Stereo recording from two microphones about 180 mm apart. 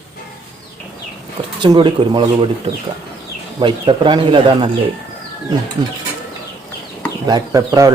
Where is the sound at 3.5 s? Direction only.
30° right (ahead or behind).